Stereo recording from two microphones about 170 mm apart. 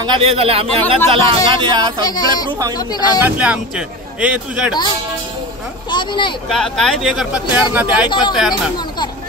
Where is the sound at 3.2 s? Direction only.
10° right (ahead or behind).